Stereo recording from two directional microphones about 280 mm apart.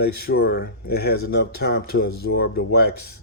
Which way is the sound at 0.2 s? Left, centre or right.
Left.